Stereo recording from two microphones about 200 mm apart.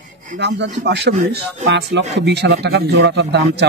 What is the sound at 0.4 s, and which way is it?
A man's voice, 60° right (ahead or behind).